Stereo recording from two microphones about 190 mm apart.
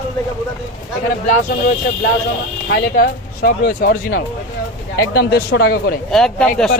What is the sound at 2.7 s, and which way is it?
Speech, 55° left (ahead or behind).